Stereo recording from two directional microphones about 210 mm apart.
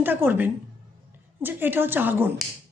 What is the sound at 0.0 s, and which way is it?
A woman's voice, 10° right (ahead or behind).